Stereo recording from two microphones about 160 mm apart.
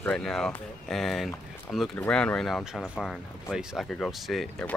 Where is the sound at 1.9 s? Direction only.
10° left (ahead or behind).